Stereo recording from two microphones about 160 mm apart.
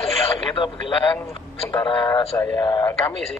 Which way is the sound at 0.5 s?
30° left (ahead or behind).